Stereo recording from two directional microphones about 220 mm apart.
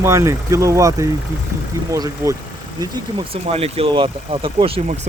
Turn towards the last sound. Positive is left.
turn(degrees=-25)  # may be behind; listen again after turning